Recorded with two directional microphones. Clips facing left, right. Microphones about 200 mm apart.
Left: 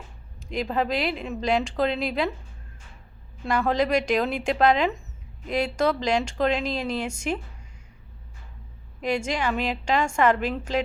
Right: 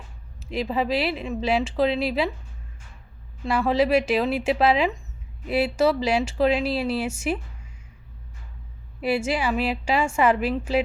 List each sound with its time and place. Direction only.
0.3 s speech: 5° right (ahead or behind)
3.4 s a woman's voice: centre (ahead or behind)
9.0 s a woman's voice: 5° right (ahead or behind)